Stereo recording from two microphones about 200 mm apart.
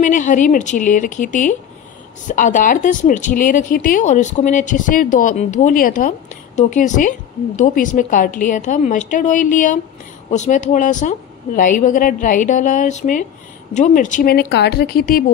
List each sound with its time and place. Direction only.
0.0 s speech: 40° left (ahead or behind)
14.5 s a woman's voice: 55° left (ahead or behind)